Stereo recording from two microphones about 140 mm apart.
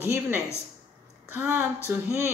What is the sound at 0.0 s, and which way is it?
A woman's voice, 20° right (ahead or behind).